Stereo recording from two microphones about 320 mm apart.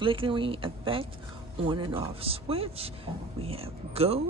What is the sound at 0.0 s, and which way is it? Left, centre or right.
Speech, centre.